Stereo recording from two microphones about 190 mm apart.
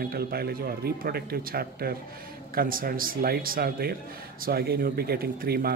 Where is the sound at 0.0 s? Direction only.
55° right (ahead or behind).